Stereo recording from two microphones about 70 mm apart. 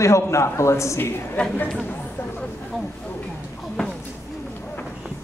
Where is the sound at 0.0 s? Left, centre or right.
Left.